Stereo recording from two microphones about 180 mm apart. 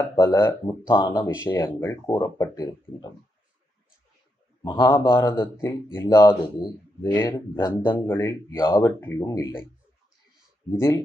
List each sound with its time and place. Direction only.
0.0 s speech: 15° left (ahead or behind)
1.1 s speech: 15° left (ahead or behind)
4.6 s speech: 25° left (ahead or behind)
4.9 s speech: 15° left (ahead or behind)
7.2 s speech: 15° left (ahead or behind)
10.7 s speech: 15° left (ahead or behind)